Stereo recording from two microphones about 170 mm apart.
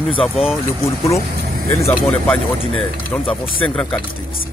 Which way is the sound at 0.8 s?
20° left (ahead or behind).